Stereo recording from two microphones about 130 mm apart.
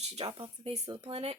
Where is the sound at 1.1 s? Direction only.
45° right (ahead or behind).